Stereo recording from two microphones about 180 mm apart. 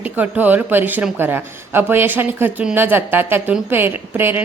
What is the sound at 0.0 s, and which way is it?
Speech, 10° right (ahead or behind).